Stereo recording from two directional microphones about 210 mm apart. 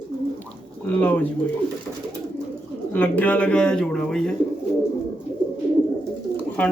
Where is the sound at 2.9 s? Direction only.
10° left (ahead or behind).